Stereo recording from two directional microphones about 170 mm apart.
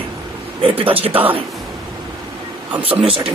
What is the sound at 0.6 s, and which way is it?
Speech, 30° right (ahead or behind).